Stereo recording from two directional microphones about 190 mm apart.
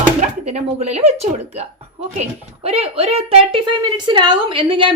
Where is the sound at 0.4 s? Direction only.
35° right (ahead or behind).